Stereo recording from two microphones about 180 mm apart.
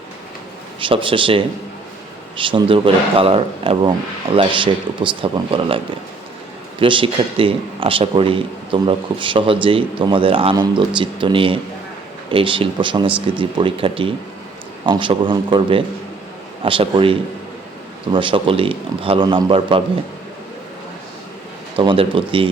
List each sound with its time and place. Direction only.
0.8 s a man's voice: 30° right (ahead or behind)
21.8 s a man's voice: 30° right (ahead or behind)